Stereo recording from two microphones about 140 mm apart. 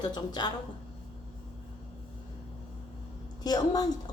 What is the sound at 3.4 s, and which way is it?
Speech, 30° left (ahead or behind).